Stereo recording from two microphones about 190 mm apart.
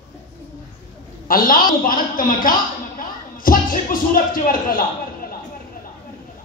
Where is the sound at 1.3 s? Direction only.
50° left (ahead or behind).